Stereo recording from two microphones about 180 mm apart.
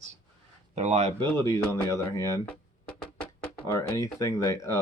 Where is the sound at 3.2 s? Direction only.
10° left (ahead or behind).